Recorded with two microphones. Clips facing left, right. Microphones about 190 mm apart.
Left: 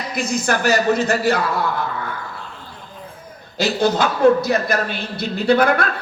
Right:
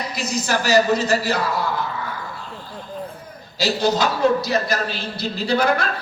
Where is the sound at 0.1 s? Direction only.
55° left (ahead or behind).